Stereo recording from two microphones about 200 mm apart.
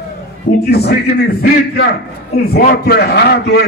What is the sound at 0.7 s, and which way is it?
A man's voice, 50° left (ahead or behind).